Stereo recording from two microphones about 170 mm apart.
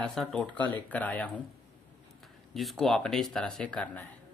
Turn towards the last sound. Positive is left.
turn(degrees=5)  # may be behind; listen again after turning